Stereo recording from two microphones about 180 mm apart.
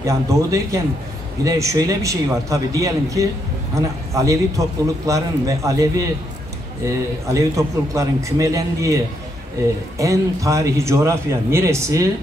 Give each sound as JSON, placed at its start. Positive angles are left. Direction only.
{"t": 0.0, "sound": "speech", "side_deg": -15}
{"t": 7.3, "sound": "speech", "side_deg": -20}